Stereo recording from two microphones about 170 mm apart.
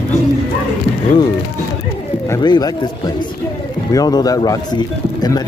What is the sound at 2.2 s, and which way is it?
Speech, 20° left (ahead or behind).